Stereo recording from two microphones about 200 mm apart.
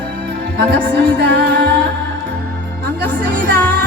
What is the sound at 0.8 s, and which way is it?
Music, 5° left (ahead or behind).